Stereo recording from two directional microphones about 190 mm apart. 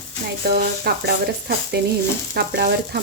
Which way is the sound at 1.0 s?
60° right (ahead or behind).